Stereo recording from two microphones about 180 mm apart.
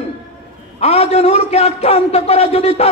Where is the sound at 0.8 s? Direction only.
35° left (ahead or behind).